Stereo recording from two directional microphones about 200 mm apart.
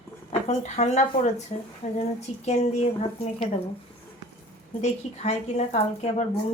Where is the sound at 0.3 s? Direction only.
30° left (ahead or behind).